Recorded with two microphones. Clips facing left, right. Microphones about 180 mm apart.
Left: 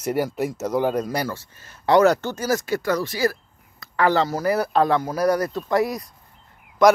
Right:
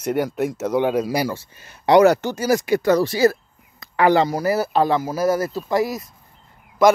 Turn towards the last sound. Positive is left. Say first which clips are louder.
# even
turn(degrees=-5)  # may be behind; listen again after turning